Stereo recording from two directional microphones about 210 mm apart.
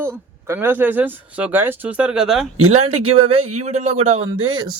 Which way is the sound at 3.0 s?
25° right (ahead or behind).